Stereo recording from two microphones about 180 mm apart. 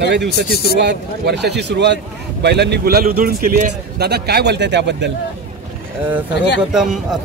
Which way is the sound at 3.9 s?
65° right (ahead or behind).